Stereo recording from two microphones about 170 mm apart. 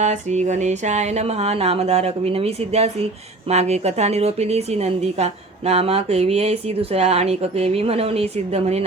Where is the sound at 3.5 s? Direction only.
40° right (ahead or behind).